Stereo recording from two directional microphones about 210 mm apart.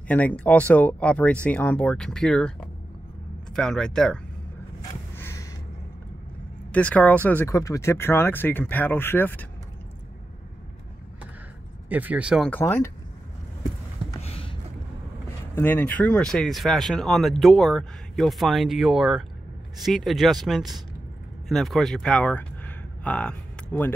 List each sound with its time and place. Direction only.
0.1 s speech: 5° left (ahead or behind)
3.5 s speech: 5° left (ahead or behind)
5.1 s a sound: 10° left (ahead or behind)
6.7 s speech: 5° left (ahead or behind)
11.9 s speech: 5° right (ahead or behind)
12.4 s speech: 10° left (ahead or behind)
14.2 s a sound: 25° left (ahead or behind)
15.5 s speech: 10° left (ahead or behind)